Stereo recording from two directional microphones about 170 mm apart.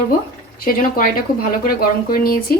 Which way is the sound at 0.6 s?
55° left (ahead or behind).